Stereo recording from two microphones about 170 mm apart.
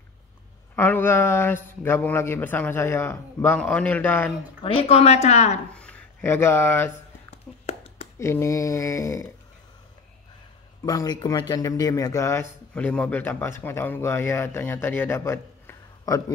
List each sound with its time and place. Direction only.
0.7 s a man's voice: 15° left (ahead or behind)
4.7 s a woman's voice: 40° left (ahead or behind)
5.7 s speech: 5° left (ahead or behind)
7.2 s a sound: 35° left (ahead or behind)
8.2 s speech: 15° left (ahead or behind)
10.9 s a man's voice: 25° left (ahead or behind)